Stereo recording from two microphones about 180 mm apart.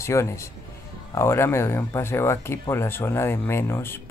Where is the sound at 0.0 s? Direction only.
15° left (ahead or behind).